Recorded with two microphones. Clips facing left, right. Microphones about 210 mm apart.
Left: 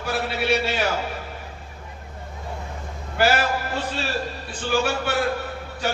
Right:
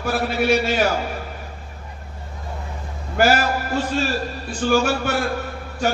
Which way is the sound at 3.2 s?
45° right (ahead or behind).